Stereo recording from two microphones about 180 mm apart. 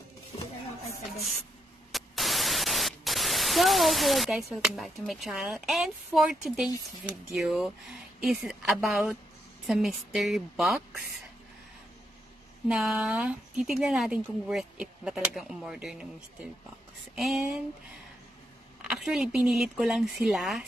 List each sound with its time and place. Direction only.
1.9 s speech: centre (ahead or behind)
12.6 s speech: 5° right (ahead or behind)
17.1 s speech: centre (ahead or behind)
18.8 s speech: 5° right (ahead or behind)